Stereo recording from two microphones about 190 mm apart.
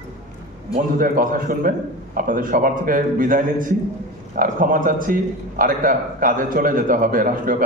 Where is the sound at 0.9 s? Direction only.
45° right (ahead or behind).